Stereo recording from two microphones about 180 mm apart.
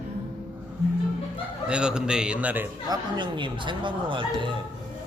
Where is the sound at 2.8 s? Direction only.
25° right (ahead or behind).